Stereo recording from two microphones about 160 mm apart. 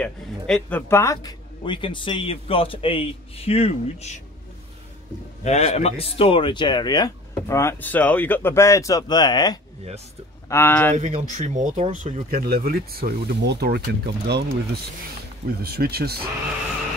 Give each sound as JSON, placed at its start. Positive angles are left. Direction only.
{"t": 0.0, "sound": "a man's voice", "side_deg": 5}
{"t": 1.6, "sound": "a man's voice", "side_deg": 30}
{"t": 5.4, "sound": "speech", "side_deg": 45}
{"t": 10.5, "sound": "a man's voice", "side_deg": 15}
{"t": 11.0, "sound": "speech", "side_deg": -50}
{"t": 12.3, "sound": "speech", "side_deg": -70}
{"t": 15.4, "sound": "speech", "side_deg": -75}